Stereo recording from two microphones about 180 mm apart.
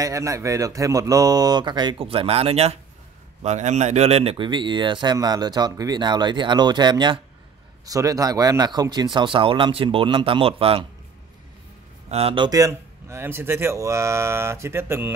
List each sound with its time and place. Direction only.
0.0 s a man's voice: 20° right (ahead or behind)
12.1 s speech: 30° right (ahead or behind); by 15.1 s 15° right (ahead or behind)